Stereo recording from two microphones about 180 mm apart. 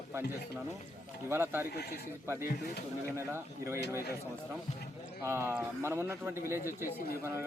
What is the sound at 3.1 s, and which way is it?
Speech, 15° right (ahead or behind).